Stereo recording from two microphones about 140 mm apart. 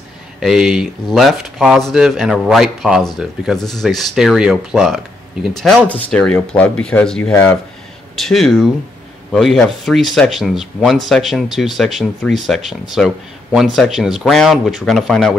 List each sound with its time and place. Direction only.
0.4 s speech: 5° right (ahead or behind)